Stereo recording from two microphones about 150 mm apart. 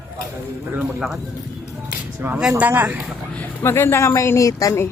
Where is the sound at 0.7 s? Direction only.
5° right (ahead or behind).